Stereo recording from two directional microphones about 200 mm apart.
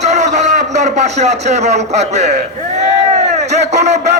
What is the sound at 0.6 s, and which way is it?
A man's voice, 35° right (ahead or behind).